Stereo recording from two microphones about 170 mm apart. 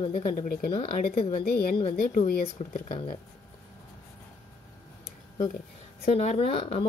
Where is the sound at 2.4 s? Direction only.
40° left (ahead or behind).